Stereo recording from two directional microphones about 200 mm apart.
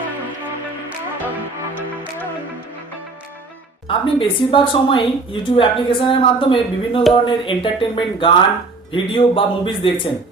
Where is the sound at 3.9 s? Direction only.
25° left (ahead or behind).